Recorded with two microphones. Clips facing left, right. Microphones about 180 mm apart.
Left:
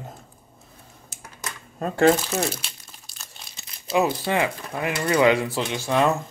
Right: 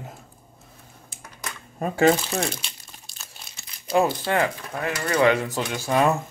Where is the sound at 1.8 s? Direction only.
Centre (ahead or behind).